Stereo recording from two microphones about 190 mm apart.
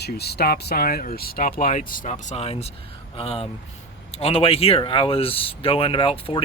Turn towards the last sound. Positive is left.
turn(degrees=30)  # may be behind; listen again after turning